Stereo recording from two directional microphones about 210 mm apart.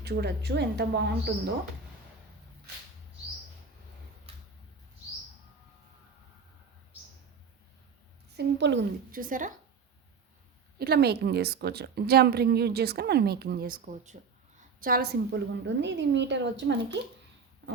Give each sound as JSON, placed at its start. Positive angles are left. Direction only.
{"t": 0.0, "sound": "a woman's voice", "side_deg": -50}
{"t": 8.4, "sound": "a woman's voice", "side_deg": -55}
{"t": 9.1, "sound": "a woman's voice", "side_deg": -40}
{"t": 10.8, "sound": "a woman's voice", "side_deg": -50}